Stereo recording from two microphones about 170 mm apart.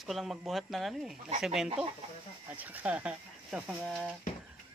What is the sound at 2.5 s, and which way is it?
Speech, 10° right (ahead or behind).